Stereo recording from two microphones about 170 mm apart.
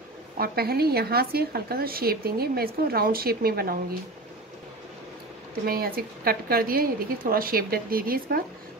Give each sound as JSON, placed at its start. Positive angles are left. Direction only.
{"t": 0.4, "sound": "speech", "side_deg": -65}
{"t": 5.7, "sound": "speech", "side_deg": -60}